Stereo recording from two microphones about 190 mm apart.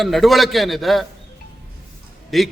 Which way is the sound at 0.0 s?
Centre (ahead or behind).